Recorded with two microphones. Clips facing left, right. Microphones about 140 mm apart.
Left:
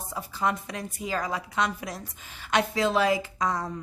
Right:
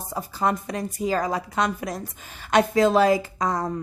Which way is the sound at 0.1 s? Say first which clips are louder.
Right 4 dB; 40° right (ahead or behind).